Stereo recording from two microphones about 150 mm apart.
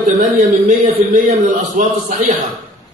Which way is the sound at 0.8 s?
60° right (ahead or behind).